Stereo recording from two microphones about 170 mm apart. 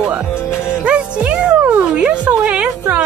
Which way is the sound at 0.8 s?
5° right (ahead or behind).